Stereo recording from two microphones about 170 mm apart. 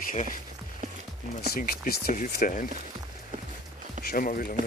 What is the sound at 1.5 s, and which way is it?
Speech, 65° left (ahead or behind).